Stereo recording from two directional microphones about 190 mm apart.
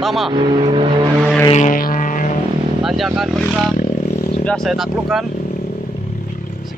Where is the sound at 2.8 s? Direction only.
Centre (ahead or behind).